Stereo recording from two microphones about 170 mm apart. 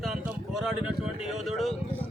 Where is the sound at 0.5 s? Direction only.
Centre (ahead or behind).